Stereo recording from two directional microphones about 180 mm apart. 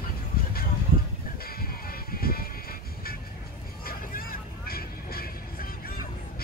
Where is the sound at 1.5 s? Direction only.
55° left (ahead or behind).